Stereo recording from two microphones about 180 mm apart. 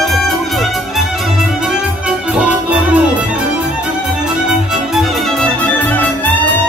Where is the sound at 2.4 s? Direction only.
5° right (ahead or behind).